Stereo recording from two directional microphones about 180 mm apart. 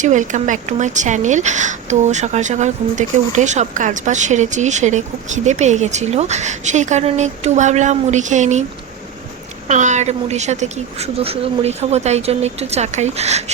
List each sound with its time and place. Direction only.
0.0 s a woman's voice: 45° right (ahead or behind)
9.6 s a woman's voice: 40° right (ahead or behind)